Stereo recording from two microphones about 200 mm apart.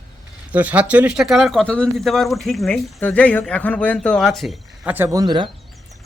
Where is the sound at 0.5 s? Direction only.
10° right (ahead or behind).